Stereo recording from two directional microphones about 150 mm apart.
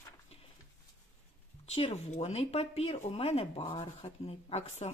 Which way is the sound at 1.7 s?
45° left (ahead or behind).